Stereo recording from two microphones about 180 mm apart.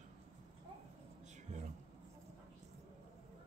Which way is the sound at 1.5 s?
40° right (ahead or behind).